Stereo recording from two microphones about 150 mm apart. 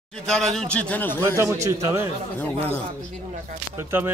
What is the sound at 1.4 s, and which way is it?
Speech, 20° right (ahead or behind).